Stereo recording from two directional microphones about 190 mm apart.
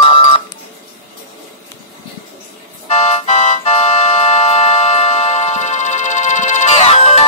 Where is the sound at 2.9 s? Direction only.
35° left (ahead or behind).